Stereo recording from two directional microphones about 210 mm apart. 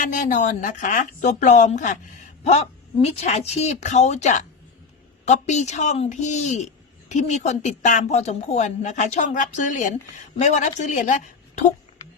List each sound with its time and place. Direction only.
0.0 s a woman's voice: 35° left (ahead or behind)